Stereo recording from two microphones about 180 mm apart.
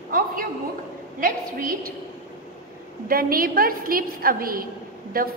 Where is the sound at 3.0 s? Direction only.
55° right (ahead or behind).